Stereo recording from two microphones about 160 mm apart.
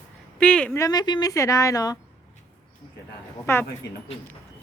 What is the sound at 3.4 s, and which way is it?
Speech, 15° left (ahead or behind).